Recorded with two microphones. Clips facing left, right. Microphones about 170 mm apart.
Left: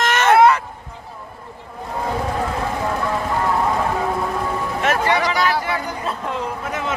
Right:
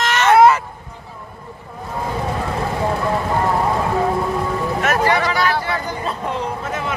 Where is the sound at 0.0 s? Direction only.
50° left (ahead or behind).